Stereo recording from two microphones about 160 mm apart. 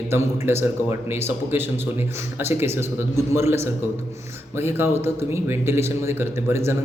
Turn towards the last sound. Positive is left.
turn(degrees=-15)  # may be behind; listen again after turning